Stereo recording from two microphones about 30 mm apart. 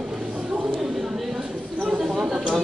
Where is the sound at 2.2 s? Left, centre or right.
Right.